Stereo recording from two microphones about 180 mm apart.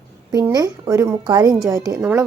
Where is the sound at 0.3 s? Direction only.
20° right (ahead or behind).